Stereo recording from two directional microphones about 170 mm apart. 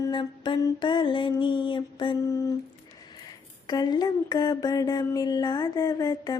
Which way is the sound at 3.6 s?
25° left (ahead or behind).